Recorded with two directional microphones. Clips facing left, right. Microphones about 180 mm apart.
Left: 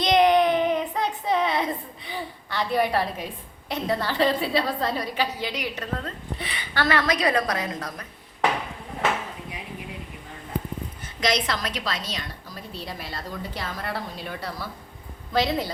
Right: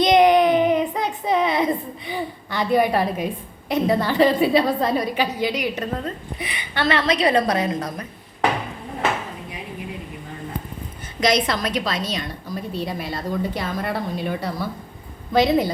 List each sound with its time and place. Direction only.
0.0 s a sound: 15° right (ahead or behind)
3.7 s a woman's voice: 15° right (ahead or behind)
11.2 s a woman's voice: 20° right (ahead or behind)